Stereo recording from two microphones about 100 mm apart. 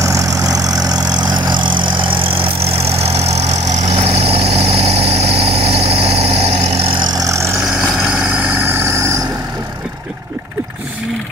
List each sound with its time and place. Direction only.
0.0 s vehicle: 35° right (ahead or behind); by 3.3 s 90° right
3.8 s vehicle: 75° right (ahead or behind)
7.2 s vehicle: 30° right (ahead or behind)